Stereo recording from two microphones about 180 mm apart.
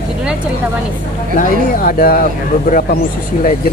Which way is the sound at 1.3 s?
50° left (ahead or behind).